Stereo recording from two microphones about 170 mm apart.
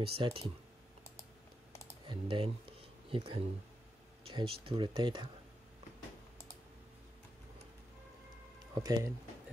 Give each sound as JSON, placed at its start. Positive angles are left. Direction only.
{"t": 0.0, "sound": "speech", "side_deg": -35}
{"t": 2.0, "sound": "speech", "side_deg": -30}
{"t": 8.8, "sound": "speech", "side_deg": -25}